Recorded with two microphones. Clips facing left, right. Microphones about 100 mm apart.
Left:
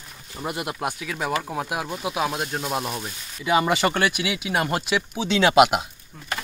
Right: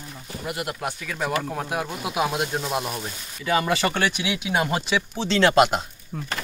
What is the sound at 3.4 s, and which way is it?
Speech, 15° left (ahead or behind).